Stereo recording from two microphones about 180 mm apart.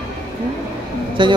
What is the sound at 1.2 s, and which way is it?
Speech, 25° right (ahead or behind).